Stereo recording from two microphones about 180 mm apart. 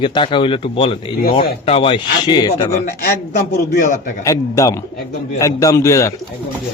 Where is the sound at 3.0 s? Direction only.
60° left (ahead or behind); by 4.1 s 45° left (ahead or behind).